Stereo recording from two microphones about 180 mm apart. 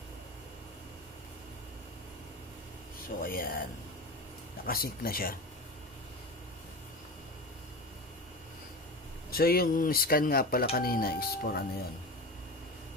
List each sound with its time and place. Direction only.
3.2 s speech: 55° left (ahead or behind)
4.6 s speech: 55° left (ahead or behind)
9.3 s speech: 55° left (ahead or behind)